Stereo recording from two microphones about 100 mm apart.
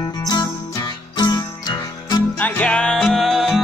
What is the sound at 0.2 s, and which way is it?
Music, 40° left (ahead or behind).